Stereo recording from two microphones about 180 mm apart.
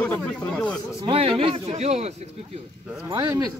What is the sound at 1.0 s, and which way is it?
Speech, 30° right (ahead or behind).